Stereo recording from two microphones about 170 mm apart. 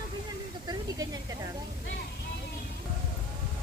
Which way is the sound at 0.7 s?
20° right (ahead or behind).